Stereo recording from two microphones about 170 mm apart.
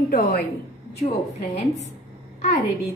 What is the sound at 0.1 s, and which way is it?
Speech, 60° left (ahead or behind).